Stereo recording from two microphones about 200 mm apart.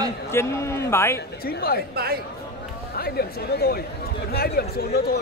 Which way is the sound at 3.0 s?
50° left (ahead or behind).